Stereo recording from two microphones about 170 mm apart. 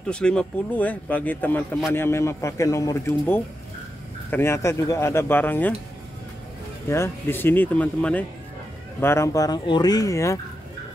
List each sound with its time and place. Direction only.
0.0 s speech: 5° left (ahead or behind)
6.9 s speech: 15° left (ahead or behind)